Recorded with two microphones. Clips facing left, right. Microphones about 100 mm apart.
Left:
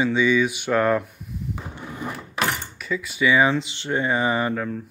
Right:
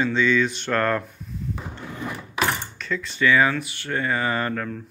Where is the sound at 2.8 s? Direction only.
10° left (ahead or behind).